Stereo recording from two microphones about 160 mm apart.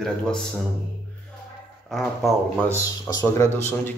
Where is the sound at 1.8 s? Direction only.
Centre (ahead or behind).